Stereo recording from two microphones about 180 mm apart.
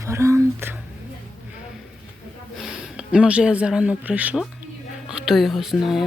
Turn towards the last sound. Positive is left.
turn(degrees=0)  # may be behind; listen again after turning